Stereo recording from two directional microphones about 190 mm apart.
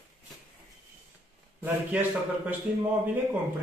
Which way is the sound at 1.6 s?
10° right (ahead or behind).